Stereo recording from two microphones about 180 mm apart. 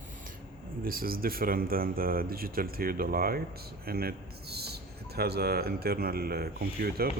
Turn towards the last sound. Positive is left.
turn(degrees=-60)  # may be behind; listen again after turning